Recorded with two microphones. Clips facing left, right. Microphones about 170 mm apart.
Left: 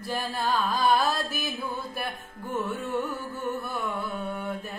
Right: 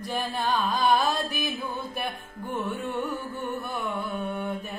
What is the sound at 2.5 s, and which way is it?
Music, centre (ahead or behind).